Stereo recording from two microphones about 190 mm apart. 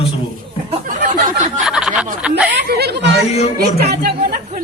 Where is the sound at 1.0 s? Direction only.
45° right (ahead or behind).